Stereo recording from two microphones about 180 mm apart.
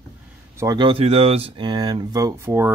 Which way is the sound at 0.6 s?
25° right (ahead or behind).